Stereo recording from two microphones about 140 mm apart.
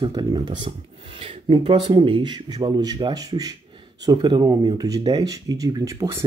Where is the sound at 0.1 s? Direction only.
35° right (ahead or behind).